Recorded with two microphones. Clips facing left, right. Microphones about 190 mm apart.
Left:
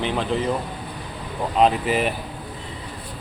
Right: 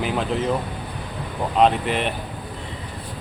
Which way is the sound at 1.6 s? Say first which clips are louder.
Even; 5° left (ahead or behind).